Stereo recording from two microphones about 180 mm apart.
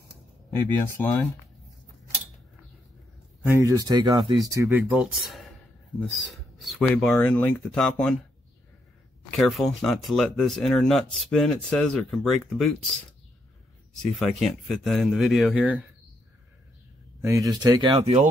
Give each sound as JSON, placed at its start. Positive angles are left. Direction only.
{"t": 0.9, "sound": "speech", "side_deg": 10}
{"t": 3.4, "sound": "speech", "side_deg": -15}
{"t": 9.4, "sound": "speech", "side_deg": 0}
{"t": 14.4, "sound": "speech", "side_deg": 0}
{"t": 17.2, "sound": "speech", "side_deg": -20}